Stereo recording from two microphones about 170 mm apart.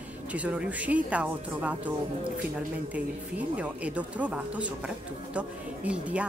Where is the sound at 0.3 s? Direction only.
5° right (ahead or behind).